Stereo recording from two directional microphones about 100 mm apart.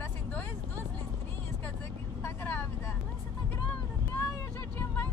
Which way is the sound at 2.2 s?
25° left (ahead or behind).